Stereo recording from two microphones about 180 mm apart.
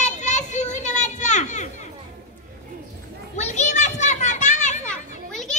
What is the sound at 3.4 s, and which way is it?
Children playing, 40° left (ahead or behind).